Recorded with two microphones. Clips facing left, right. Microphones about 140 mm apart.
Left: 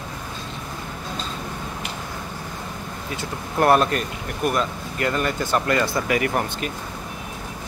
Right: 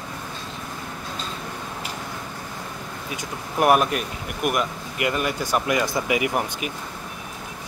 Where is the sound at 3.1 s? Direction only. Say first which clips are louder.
Left 2 dB; 10° right (ahead or behind).